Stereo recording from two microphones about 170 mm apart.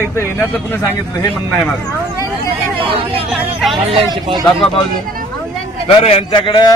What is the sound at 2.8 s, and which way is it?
Speech, 30° right (ahead or behind).